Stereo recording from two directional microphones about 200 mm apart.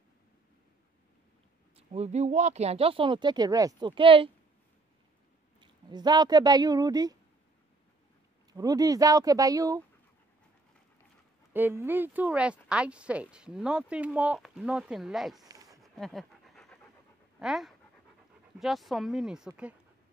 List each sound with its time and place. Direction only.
1.8 s speech: 30° right (ahead or behind)
5.6 s speech: 20° right (ahead or behind)
8.5 s speech: 20° right (ahead or behind)
11.5 s speech: 10° right (ahead or behind)
15.4 s a sound: 20° right (ahead or behind)
15.8 s pant: centre (ahead or behind)
17.4 s speech: centre (ahead or behind)